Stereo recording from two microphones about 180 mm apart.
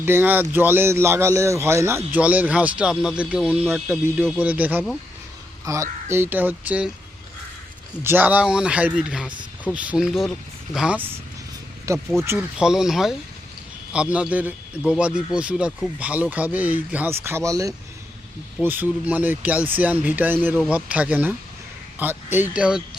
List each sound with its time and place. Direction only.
0.0 s speech: 10° right (ahead or behind)
8.0 s speech: 10° right (ahead or behind)
11.9 s speech: 15° right (ahead or behind)